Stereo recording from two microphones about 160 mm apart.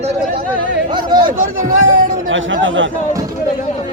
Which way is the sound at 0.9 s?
25° right (ahead or behind).